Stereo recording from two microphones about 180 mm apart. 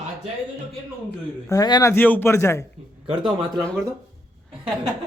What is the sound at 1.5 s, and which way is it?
Speech, 20° left (ahead or behind).